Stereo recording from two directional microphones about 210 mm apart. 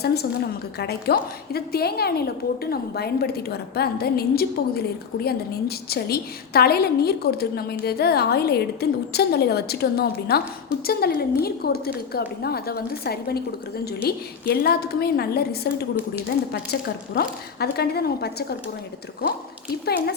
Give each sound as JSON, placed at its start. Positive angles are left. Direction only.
{"t": 0.0, "sound": "a woman's voice", "side_deg": 50}